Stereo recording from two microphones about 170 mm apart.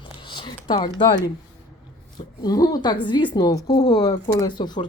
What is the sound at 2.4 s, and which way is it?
Speech, 20° left (ahead or behind).